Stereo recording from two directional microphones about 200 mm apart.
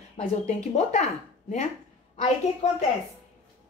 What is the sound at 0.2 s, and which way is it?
Speech, 35° left (ahead or behind).